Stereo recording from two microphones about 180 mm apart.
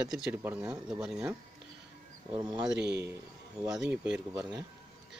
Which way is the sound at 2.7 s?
70° right (ahead or behind).